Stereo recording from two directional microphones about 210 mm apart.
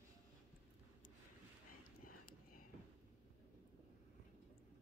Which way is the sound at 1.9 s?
40° left (ahead or behind).